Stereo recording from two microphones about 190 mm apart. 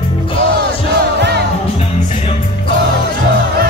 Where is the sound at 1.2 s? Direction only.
60° right (ahead or behind).